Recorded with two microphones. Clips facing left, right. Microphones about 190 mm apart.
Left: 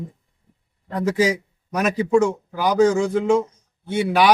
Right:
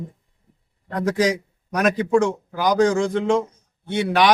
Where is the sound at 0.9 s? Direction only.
5° left (ahead or behind).